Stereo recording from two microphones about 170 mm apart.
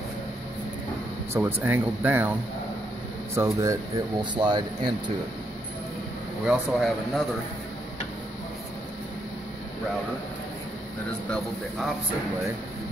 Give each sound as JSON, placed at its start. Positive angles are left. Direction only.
{"t": 1.3, "sound": "speech", "side_deg": -15}
{"t": 3.3, "sound": "speech", "side_deg": -15}
{"t": 6.4, "sound": "a man's voice", "side_deg": -5}